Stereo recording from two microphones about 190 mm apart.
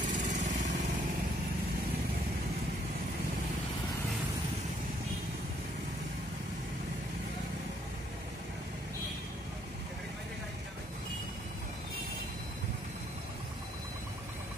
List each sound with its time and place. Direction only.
0.1 s lawn mower: 40° right (ahead or behind)